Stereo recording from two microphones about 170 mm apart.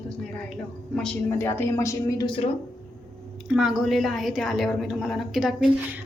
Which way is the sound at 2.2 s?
30° left (ahead or behind).